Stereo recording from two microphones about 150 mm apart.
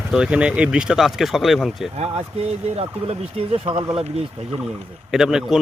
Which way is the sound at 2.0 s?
45° right (ahead or behind).